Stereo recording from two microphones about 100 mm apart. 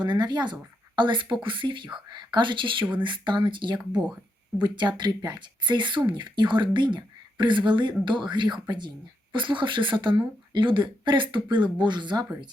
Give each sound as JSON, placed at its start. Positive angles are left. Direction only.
{"t": 0.0, "sound": "speech", "side_deg": -45}